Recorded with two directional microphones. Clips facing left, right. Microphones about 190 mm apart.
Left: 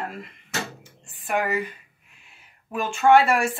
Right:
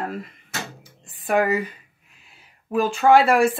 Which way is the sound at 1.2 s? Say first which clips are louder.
Right 5 dB; 35° right (ahead or behind).